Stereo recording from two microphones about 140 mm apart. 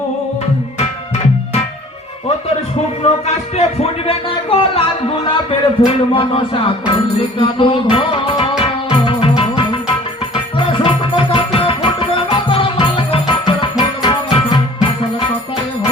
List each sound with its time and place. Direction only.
3.0 s a sound: 50° left (ahead or behind)
5.2 s speech: 35° left (ahead or behind)
8.9 s music: 40° left (ahead or behind)